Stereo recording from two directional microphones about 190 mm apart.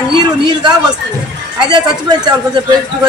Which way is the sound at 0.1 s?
25° right (ahead or behind).